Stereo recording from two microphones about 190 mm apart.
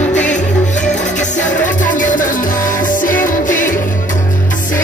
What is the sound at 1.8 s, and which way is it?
Music, 45° left (ahead or behind).